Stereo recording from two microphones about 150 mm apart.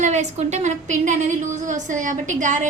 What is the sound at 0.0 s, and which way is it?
A woman's voice, 50° right (ahead or behind).